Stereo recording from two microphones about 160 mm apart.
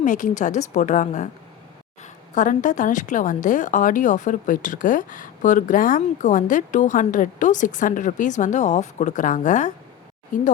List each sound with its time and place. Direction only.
0.0 s a woman's voice: 50° left (ahead or behind)
2.3 s a woman's voice: 50° left (ahead or behind)